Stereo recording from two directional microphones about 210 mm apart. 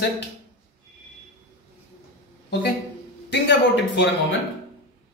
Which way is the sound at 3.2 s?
55° left (ahead or behind).